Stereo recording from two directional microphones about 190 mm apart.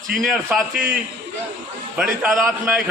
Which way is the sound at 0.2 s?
Centre (ahead or behind).